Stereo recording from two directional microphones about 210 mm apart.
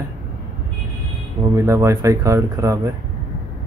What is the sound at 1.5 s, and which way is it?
Speech, 15° right (ahead or behind).